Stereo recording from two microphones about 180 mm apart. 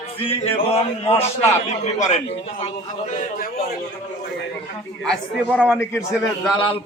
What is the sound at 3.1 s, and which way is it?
Speech, 45° left (ahead or behind).